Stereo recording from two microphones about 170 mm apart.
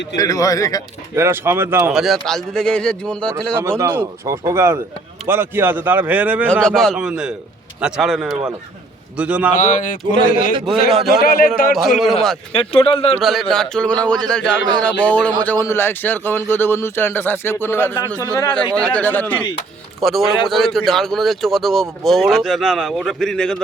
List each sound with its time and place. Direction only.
0.2 s a man's voice: 20° left (ahead or behind)
1.1 s speech: 15° right (ahead or behind)
1.9 s speech: centre (ahead or behind)
3.6 s speech: 15° right (ahead or behind)
6.5 s speech: 5° left (ahead or behind)
9.6 s speech: 50° left (ahead or behind)
10.3 s a man's voice: 30° right (ahead or behind)
10.8 s speech: centre (ahead or behind)
11.2 s a man's voice: 60° left (ahead or behind)
12.5 s speech: 30° left (ahead or behind)
13.2 s speech: centre (ahead or behind); by 18.5 s 20° left (ahead or behind)
18.8 s speech: 10° left (ahead or behind)